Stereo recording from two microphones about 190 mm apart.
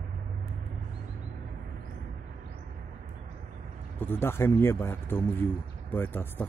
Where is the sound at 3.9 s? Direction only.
10° left (ahead or behind).